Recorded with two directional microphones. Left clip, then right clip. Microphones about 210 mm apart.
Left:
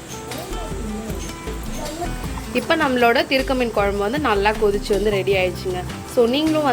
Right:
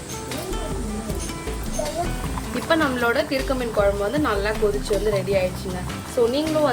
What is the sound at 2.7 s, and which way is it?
A woman's voice, 25° left (ahead or behind).